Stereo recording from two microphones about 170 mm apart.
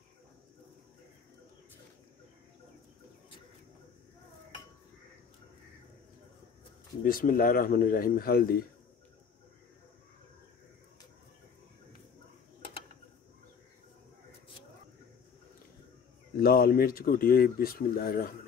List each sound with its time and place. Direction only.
7.1 s speech: 55° left (ahead or behind)
16.3 s speech: 60° left (ahead or behind)